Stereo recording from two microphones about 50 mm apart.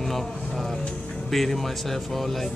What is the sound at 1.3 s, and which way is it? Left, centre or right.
Speech, centre.